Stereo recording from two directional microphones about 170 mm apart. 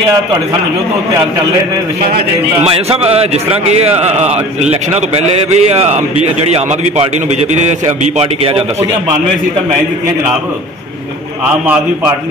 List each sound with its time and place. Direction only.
2.6 s a man's voice: 35° right (ahead or behind)
11.6 s a man's voice: 10° right (ahead or behind)